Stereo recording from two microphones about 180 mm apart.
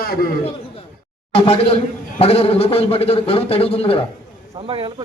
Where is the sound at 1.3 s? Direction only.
30° left (ahead or behind).